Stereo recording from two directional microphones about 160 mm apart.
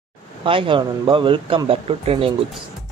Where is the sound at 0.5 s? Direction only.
30° right (ahead or behind).